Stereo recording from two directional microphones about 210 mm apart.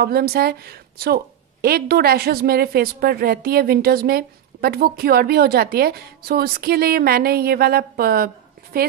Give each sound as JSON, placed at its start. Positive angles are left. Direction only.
{"t": 0.0, "sound": "a woman's voice", "side_deg": -45}